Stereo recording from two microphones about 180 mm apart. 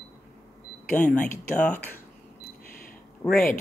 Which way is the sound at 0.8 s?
10° left (ahead or behind).